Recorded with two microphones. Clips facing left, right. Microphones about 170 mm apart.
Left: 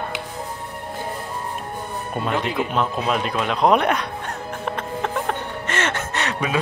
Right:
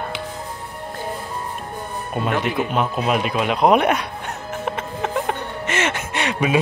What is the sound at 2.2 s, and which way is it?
A man's voice, 5° right (ahead or behind).